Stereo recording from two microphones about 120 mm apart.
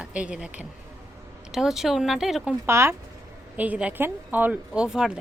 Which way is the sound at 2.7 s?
20° right (ahead or behind).